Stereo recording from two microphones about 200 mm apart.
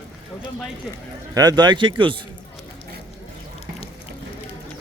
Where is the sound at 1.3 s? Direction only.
20° right (ahead or behind).